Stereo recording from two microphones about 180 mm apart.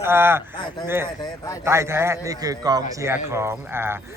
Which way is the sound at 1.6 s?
15° right (ahead or behind).